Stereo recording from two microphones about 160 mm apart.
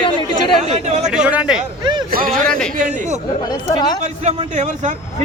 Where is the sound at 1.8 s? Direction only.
25° right (ahead or behind).